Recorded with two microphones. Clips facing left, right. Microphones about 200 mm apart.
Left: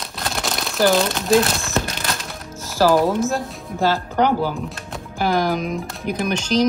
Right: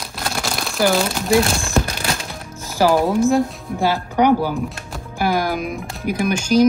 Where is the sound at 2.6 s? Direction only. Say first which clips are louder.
Even; 15° right (ahead or behind).